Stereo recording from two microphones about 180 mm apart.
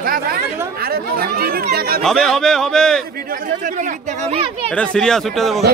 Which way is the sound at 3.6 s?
45° right (ahead or behind).